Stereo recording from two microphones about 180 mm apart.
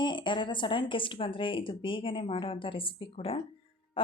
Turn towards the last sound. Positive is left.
turn(degrees=30)  # may be behind; listen again after turning